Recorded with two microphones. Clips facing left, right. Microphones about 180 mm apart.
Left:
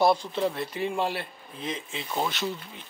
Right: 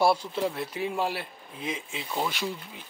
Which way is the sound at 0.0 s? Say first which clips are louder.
Left 1 dB; 5° right (ahead or behind).